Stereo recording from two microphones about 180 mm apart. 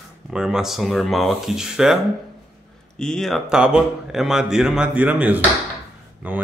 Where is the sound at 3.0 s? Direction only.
5° left (ahead or behind).